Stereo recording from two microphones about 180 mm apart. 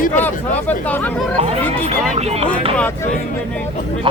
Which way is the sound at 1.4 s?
35° right (ahead or behind).